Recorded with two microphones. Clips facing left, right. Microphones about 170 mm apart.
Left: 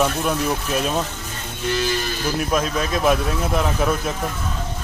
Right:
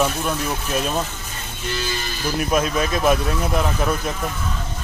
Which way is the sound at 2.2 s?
5° right (ahead or behind).